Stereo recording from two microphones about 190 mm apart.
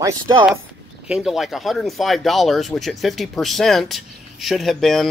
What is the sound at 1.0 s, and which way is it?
Speech, 5° right (ahead or behind).